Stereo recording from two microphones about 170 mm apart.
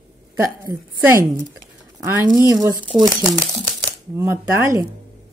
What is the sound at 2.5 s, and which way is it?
Speech, 20° right (ahead or behind).